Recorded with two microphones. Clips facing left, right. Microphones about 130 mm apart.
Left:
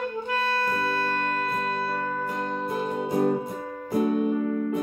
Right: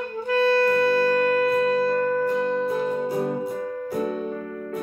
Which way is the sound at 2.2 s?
10° left (ahead or behind).